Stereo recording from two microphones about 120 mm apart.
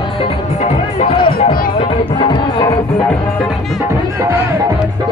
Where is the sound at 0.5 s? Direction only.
60° left (ahead or behind); by 2.7 s 40° left (ahead or behind).